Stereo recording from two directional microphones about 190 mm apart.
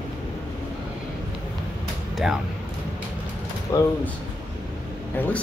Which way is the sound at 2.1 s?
Centre (ahead or behind).